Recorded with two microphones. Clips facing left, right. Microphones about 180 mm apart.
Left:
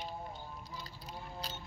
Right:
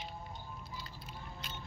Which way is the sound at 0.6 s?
35° left (ahead or behind).